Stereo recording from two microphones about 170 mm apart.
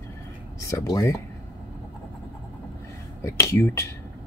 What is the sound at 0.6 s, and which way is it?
Speech, 20° left (ahead or behind).